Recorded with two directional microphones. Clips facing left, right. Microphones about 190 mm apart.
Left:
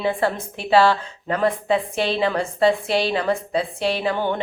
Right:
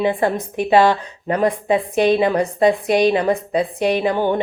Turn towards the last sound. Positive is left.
turn(degrees=-15)  # may be behind; listen again after turning